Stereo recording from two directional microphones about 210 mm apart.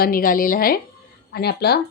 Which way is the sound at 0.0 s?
40° left (ahead or behind).